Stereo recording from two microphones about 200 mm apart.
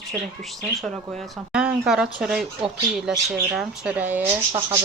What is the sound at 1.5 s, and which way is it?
Speech, 5° right (ahead or behind).